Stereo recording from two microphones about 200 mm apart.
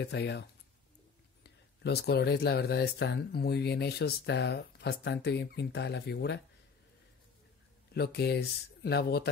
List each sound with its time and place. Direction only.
0.0 s speech: 55° left (ahead or behind)
7.9 s speech: 55° left (ahead or behind)